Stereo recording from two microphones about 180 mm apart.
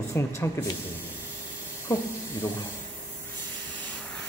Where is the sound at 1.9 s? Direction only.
20° left (ahead or behind).